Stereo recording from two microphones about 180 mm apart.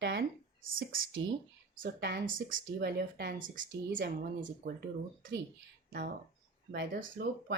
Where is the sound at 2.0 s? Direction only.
65° right (ahead or behind); by 4.0 s 90° right.